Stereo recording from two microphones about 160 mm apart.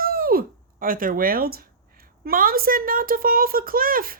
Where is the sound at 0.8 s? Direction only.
60° right (ahead or behind).